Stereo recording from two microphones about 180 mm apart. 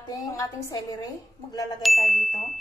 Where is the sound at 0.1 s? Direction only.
20° left (ahead or behind).